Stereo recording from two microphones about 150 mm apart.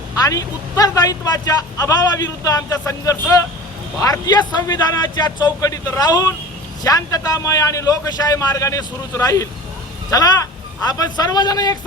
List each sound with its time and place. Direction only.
0.2 s a man's voice: 25° left (ahead or behind)